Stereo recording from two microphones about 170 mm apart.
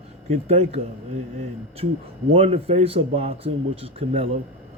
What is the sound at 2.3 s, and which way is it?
Speech, 35° right (ahead or behind).